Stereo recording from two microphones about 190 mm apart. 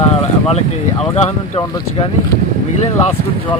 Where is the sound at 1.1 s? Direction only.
35° left (ahead or behind).